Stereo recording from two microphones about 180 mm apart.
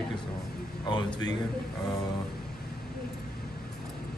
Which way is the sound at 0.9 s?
25° left (ahead or behind).